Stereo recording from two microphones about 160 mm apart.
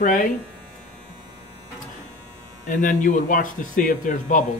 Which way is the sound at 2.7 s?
55° left (ahead or behind).